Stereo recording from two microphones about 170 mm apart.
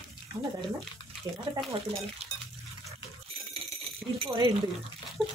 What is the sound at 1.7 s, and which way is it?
Speech, 35° right (ahead or behind).